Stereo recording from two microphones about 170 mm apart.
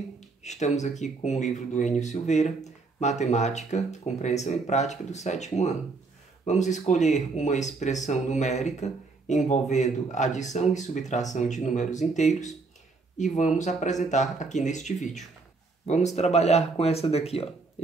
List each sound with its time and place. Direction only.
0.4 s speech: 45° left (ahead or behind)